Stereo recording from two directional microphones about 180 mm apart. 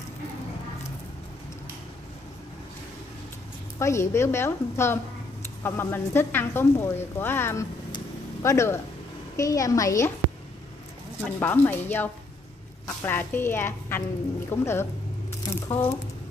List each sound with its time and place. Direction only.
3.8 s a woman's voice: 15° left (ahead or behind)
11.2 s a woman's voice: 10° left (ahead or behind)